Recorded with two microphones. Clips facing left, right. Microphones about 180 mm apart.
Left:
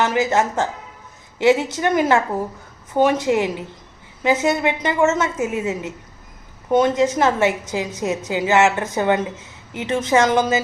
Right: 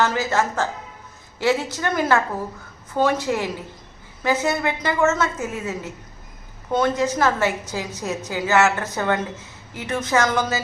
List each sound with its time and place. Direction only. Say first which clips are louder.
0.0 s a woman's voice: left 3 dB; 20° left (ahead or behind)